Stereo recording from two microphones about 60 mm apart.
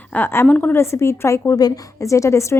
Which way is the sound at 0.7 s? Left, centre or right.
Left.